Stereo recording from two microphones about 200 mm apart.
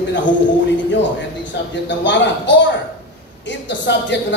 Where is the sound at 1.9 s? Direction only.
65° left (ahead or behind).